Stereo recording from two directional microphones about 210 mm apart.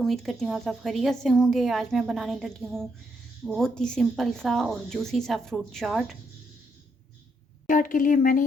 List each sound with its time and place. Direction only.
0.0 s a woman's voice: centre (ahead or behind)
7.7 s a woman's voice: 40° left (ahead or behind)